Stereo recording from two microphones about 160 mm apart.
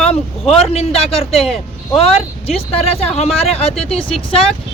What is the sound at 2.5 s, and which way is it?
Speech, 40° left (ahead or behind).